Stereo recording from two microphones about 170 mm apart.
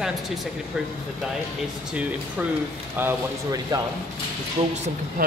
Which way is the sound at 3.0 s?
15° right (ahead or behind).